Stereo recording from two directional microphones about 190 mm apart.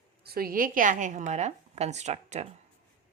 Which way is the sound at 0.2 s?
55° right (ahead or behind).